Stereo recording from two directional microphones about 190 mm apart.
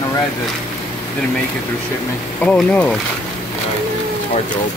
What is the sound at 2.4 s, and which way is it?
Speech, 5° left (ahead or behind).